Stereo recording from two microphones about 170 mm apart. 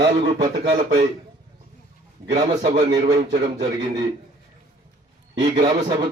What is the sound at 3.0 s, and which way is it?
Speech, 45° right (ahead or behind).